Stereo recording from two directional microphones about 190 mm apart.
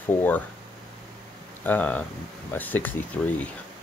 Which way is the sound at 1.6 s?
10° left (ahead or behind).